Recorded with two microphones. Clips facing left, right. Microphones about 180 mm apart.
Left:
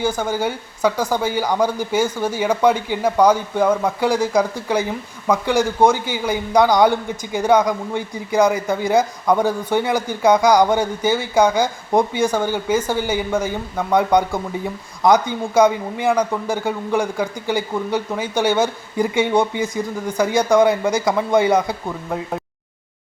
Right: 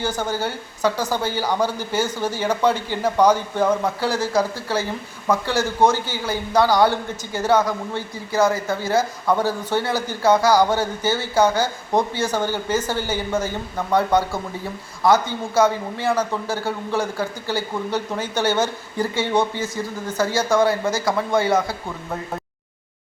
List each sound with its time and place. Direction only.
0.0 s speech: 10° left (ahead or behind)